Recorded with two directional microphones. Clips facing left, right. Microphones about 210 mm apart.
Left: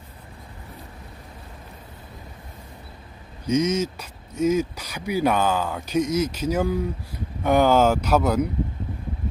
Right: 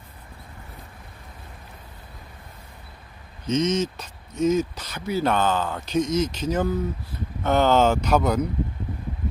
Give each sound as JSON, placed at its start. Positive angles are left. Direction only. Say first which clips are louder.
{"t": 3.4, "sound": "speech", "louder": "left 1 dB", "side_deg": 10}